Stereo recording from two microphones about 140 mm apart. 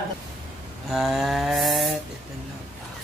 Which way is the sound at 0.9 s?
Centre (ahead or behind).